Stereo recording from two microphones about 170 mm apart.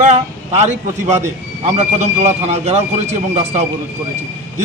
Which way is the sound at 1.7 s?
40° right (ahead or behind).